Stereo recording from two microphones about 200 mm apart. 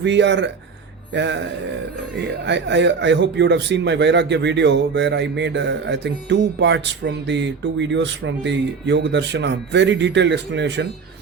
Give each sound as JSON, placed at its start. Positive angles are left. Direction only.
{"t": 0.0, "sound": "speech", "side_deg": -60}